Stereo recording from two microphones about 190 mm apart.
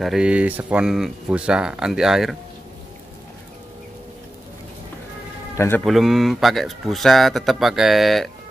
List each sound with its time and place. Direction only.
0.0 s speech: 5° right (ahead or behind)
5.9 s speech: centre (ahead or behind)